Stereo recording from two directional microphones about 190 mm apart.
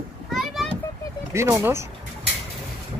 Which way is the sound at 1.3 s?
15° right (ahead or behind).